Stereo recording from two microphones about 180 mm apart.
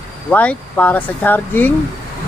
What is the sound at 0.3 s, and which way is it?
Speech, 10° left (ahead or behind).